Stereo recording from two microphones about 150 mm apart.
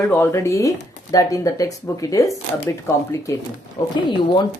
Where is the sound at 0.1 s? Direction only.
15° left (ahead or behind).